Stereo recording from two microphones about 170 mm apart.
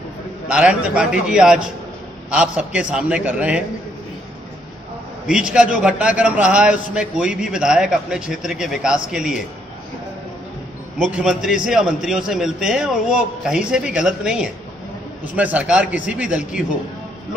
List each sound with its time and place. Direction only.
0.5 s a man's voice: 5° right (ahead or behind)
5.2 s a man's voice: 5° right (ahead or behind)
11.0 s a man's voice: 5° right (ahead or behind)